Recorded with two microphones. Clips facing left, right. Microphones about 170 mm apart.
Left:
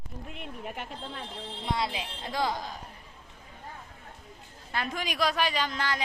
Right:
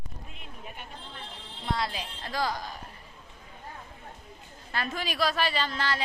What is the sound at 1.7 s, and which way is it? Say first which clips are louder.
Speech: left 1 dB; 20° left (ahead or behind).